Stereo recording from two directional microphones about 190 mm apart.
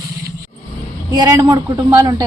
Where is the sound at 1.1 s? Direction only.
15° right (ahead or behind).